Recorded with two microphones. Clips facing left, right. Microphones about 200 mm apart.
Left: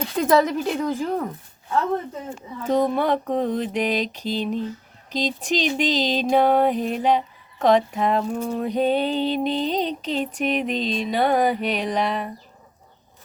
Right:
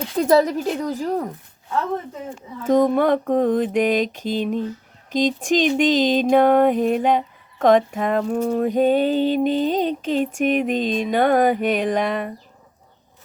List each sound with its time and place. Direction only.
0.2 s speech: 40° right (ahead or behind)
2.6 s music: 50° right (ahead or behind)